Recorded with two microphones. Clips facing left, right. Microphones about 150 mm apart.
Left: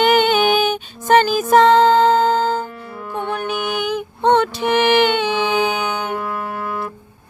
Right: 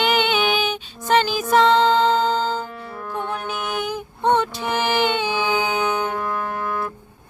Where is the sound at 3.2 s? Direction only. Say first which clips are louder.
Left 8 dB; 65° left (ahead or behind).